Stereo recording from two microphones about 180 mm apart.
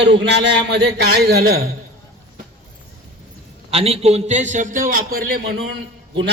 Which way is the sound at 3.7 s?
35° right (ahead or behind).